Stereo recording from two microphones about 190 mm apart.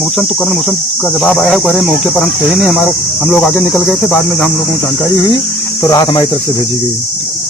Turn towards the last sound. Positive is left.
turn(degrees=20)  # may be behind; listen again after turning